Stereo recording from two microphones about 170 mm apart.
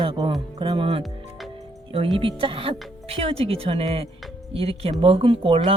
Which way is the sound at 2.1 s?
30° right (ahead or behind).